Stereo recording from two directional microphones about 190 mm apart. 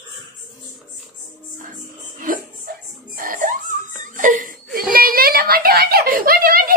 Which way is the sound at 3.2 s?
45° right (ahead or behind).